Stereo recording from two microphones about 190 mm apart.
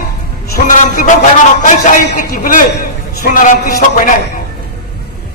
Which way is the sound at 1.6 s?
45° left (ahead or behind).